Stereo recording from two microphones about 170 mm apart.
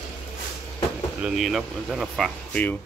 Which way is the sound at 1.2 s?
Centre (ahead or behind).